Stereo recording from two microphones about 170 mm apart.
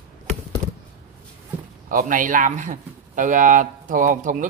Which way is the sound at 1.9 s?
50° right (ahead or behind).